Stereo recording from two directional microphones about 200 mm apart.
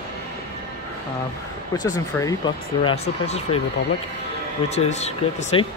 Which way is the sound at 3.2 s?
30° left (ahead or behind).